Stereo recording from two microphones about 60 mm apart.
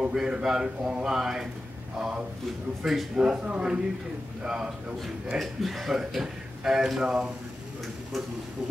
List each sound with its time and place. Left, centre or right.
0.0 s speech: centre
5.4 s speech: centre